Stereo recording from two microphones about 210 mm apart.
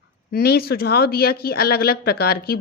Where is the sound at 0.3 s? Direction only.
45° left (ahead or behind).